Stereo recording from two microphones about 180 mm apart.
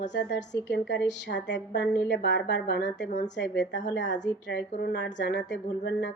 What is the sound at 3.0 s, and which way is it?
Speech, 40° left (ahead or behind).